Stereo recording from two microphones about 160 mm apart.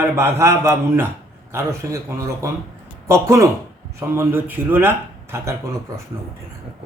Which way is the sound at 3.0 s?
20° right (ahead or behind).